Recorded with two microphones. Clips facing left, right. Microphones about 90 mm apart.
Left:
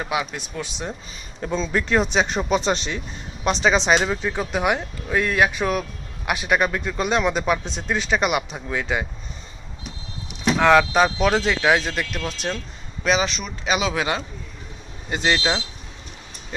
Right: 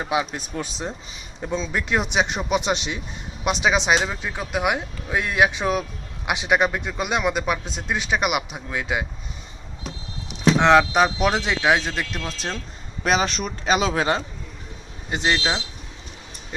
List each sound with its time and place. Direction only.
0.0 s speech: 25° right (ahead or behind)
0.3 s speech: 35° right (ahead or behind)
1.4 s speech: 10° right (ahead or behind)
10.2 s speech: 20° right (ahead or behind)
13.1 s speech: 45° right (ahead or behind)
15.1 s speech: 15° right (ahead or behind)